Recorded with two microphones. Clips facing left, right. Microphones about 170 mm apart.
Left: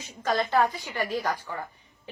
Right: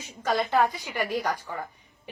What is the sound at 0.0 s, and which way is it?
A woman's voice, 15° right (ahead or behind).